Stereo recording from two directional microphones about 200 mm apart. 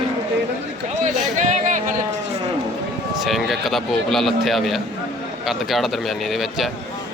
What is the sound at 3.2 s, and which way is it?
A man's voice, centre (ahead or behind).